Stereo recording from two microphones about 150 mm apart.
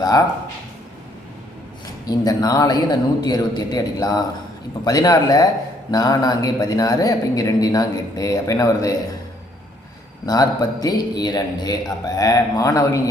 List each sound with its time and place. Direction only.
2.0 s speech: 25° left (ahead or behind)
10.2 s speech: 25° left (ahead or behind)